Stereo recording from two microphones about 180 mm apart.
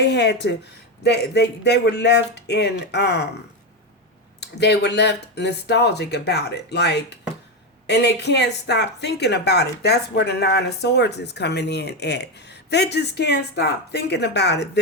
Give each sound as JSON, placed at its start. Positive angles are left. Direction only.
{"t": 0.0, "sound": "speech", "side_deg": 70}
{"t": 4.4, "sound": "speech", "side_deg": 70}